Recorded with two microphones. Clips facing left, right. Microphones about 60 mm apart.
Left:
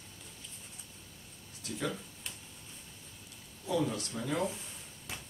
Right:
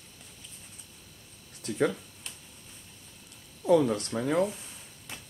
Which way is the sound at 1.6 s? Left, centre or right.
Right.